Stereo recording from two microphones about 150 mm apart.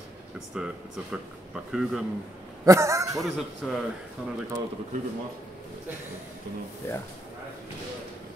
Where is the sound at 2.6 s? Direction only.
20° right (ahead or behind).